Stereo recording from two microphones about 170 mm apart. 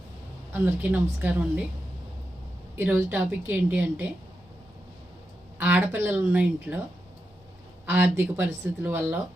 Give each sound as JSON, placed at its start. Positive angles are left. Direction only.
{"t": 0.5, "sound": "a woman's voice", "side_deg": -10}
{"t": 2.7, "sound": "a woman's voice", "side_deg": -10}
{"t": 5.5, "sound": "a woman's voice", "side_deg": -10}
{"t": 7.9, "sound": "a woman's voice", "side_deg": -10}